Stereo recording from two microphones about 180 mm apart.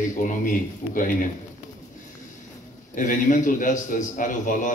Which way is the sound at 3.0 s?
45° left (ahead or behind).